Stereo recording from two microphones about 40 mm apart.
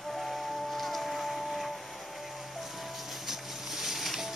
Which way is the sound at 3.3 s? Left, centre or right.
Centre.